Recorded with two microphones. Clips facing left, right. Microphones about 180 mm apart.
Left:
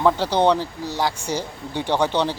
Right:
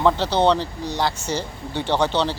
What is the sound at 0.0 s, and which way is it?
Speech, 10° left (ahead or behind).